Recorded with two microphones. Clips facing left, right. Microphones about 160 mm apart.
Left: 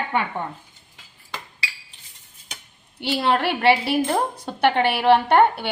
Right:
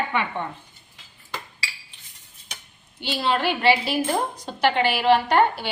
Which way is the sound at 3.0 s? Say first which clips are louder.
Left 3 dB; 60° left (ahead or behind).